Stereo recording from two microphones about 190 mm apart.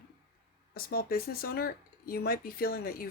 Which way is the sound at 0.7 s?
50° left (ahead or behind).